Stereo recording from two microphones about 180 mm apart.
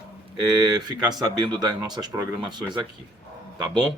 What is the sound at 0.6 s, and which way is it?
Speech, 25° right (ahead or behind).